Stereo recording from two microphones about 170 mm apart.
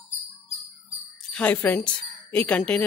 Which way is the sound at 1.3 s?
10° left (ahead or behind).